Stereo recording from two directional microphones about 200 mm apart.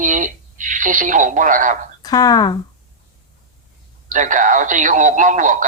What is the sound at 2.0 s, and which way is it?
Speech, 20° left (ahead or behind).